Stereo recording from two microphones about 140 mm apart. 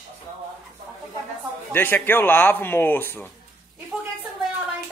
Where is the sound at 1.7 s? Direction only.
15° left (ahead or behind).